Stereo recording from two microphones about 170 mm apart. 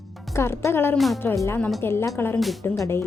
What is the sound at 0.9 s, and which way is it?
A woman's voice, centre (ahead or behind).